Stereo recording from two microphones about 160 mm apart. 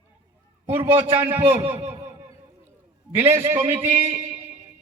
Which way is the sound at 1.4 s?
35° right (ahead or behind).